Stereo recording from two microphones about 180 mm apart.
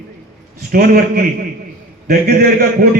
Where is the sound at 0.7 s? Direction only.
60° right (ahead or behind).